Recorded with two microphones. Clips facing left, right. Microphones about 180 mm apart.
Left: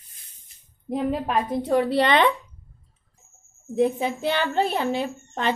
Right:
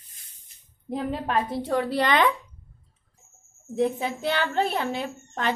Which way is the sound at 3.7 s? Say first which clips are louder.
Left 3 dB; 20° left (ahead or behind).